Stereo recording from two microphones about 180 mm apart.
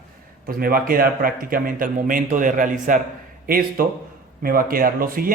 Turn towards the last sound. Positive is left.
turn(degrees=-55)  # may be behind; listen again after turning